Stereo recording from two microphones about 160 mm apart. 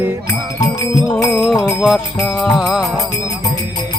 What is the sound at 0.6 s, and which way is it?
Music, 20° left (ahead or behind).